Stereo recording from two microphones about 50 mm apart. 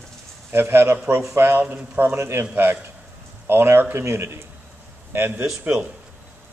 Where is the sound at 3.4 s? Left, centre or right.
Right.